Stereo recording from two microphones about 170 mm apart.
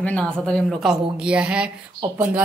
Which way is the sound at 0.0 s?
5° left (ahead or behind).